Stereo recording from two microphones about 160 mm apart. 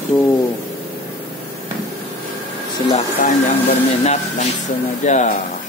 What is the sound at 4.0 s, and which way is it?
Speech, 45° left (ahead or behind).